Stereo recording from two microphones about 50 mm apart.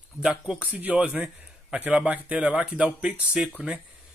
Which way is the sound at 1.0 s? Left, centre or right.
Centre.